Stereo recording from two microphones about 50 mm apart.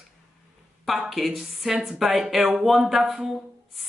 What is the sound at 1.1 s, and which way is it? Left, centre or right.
Speech, centre.